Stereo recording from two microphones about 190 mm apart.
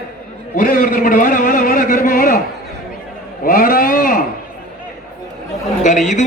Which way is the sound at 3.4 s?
45° left (ahead or behind).